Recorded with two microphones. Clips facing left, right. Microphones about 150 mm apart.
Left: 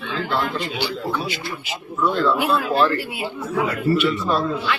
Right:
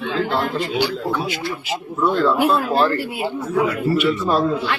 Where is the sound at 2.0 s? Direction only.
45° right (ahead or behind).